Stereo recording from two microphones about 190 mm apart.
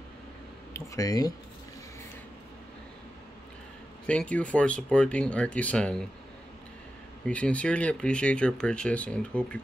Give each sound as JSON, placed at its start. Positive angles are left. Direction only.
{"t": 0.7, "sound": "speech", "side_deg": 20}
{"t": 4.1, "sound": "speech", "side_deg": 5}
{"t": 7.2, "sound": "speech", "side_deg": 5}